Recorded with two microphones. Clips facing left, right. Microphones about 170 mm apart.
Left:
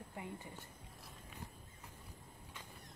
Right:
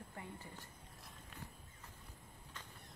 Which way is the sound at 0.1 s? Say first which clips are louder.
Left 6 dB; 15° left (ahead or behind).